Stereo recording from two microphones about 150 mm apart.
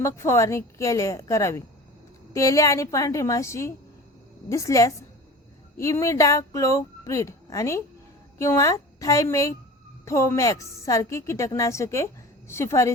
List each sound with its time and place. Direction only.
0.0 s speech: 20° left (ahead or behind)